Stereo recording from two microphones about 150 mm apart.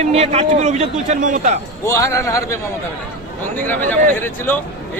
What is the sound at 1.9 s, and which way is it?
Speech, 20° left (ahead or behind).